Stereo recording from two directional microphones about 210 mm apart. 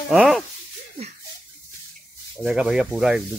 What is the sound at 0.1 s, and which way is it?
Speech, centre (ahead or behind).